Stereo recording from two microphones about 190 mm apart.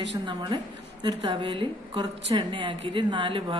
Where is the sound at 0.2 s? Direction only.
25° right (ahead or behind).